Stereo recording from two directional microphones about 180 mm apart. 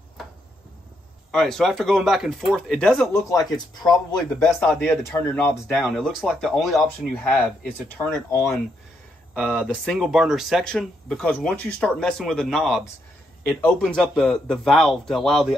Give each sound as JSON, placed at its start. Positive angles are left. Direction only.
{"t": 1.3, "sound": "speech", "side_deg": 0}
{"t": 3.1, "sound": "a man's voice", "side_deg": 20}
{"t": 4.2, "sound": "speech", "side_deg": 5}
{"t": 9.3, "sound": "speech", "side_deg": 0}